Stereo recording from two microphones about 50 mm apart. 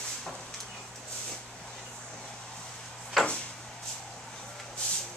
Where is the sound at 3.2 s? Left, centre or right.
Centre.